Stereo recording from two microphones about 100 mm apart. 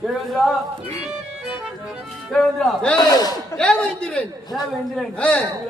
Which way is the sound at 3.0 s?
40° left (ahead or behind).